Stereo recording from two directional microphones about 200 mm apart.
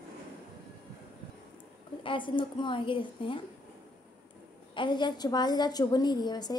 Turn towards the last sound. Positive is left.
turn(degrees=20)  # may be behind; listen again after turning